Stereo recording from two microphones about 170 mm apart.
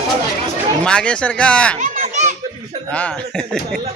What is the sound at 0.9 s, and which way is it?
Speech, 5° left (ahead or behind).